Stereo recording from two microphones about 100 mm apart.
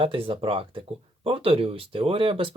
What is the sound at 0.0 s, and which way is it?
Speech, 65° right (ahead or behind).